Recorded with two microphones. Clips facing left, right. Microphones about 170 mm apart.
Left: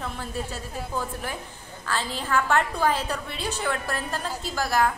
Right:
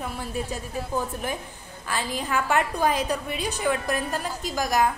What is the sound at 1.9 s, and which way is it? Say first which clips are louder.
A woman's voice: left 1 dB; 15° right (ahead or behind).